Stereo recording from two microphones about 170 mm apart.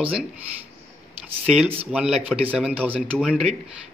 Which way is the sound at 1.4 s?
5° right (ahead or behind).